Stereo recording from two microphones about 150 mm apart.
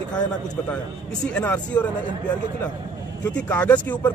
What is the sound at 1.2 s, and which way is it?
Speech, 10° left (ahead or behind).